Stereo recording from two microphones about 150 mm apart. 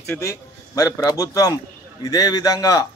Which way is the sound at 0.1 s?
20° left (ahead or behind).